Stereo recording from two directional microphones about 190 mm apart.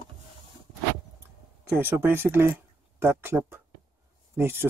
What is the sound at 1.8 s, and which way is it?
Speech, 10° right (ahead or behind).